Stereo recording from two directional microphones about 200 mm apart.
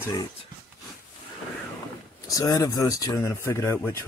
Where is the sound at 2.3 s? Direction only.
15° left (ahead or behind).